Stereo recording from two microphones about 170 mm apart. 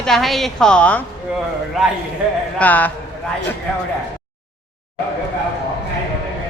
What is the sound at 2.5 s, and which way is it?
Speech, 10° left (ahead or behind).